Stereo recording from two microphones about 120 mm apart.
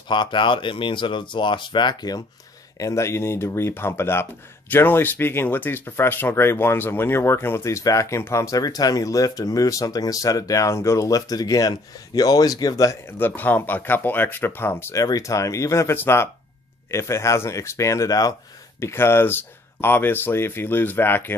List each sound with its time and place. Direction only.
0.1 s speech: 40° left (ahead or behind)
13.0 s speech: 15° left (ahead or behind)